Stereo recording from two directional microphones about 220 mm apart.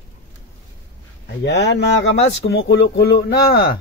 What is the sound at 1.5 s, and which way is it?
Speech, 50° left (ahead or behind).